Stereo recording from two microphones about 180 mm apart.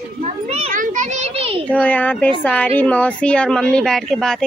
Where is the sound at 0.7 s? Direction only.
45° right (ahead or behind).